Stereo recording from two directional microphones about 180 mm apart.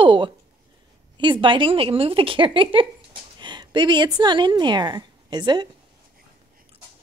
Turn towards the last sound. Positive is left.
turn(degrees=-25)  # may be behind; listen again after turning